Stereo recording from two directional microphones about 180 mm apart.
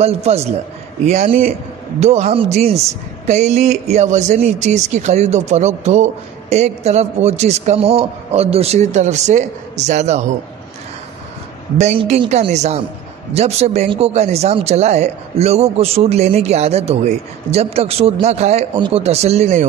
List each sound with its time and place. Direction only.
0.0 s speech: 35° right (ahead or behind)
12.0 s speech: 35° right (ahead or behind)